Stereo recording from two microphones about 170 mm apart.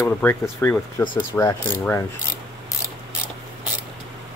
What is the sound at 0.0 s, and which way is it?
Speech, 10° left (ahead or behind).